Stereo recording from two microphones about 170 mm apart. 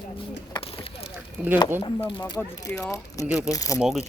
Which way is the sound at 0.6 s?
35° left (ahead or behind).